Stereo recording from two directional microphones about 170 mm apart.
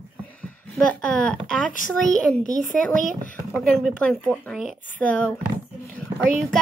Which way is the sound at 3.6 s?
Centre (ahead or behind).